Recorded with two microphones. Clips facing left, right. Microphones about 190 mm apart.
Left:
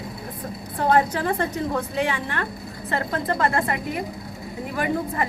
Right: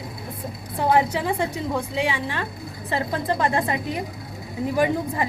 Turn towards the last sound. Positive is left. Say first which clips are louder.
# right 2 dB
turn(degrees=-15)  # may be behind; listen again after turning